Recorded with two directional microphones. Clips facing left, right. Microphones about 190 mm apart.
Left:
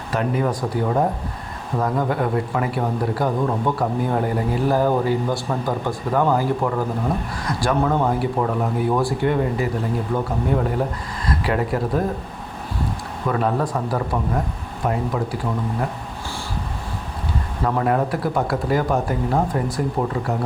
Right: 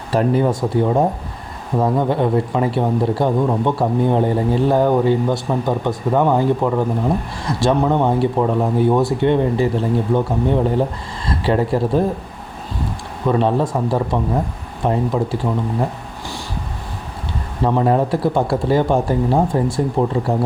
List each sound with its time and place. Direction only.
0.1 s speech: 30° right (ahead or behind)
13.2 s speech: 25° right (ahead or behind)
17.6 s speech: 25° right (ahead or behind)